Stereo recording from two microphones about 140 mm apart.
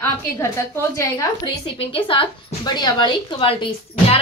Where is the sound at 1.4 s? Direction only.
40° left (ahead or behind).